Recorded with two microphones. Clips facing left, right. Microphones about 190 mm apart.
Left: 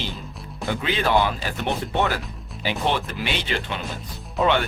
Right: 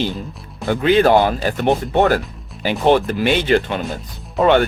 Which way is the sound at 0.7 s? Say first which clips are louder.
Right 9 dB; 50° right (ahead or behind).